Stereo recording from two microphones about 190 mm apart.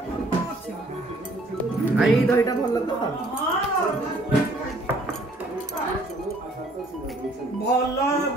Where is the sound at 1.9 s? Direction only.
Centre (ahead or behind).